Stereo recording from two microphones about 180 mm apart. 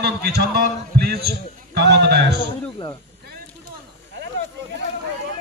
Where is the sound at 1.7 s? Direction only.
65° right (ahead or behind).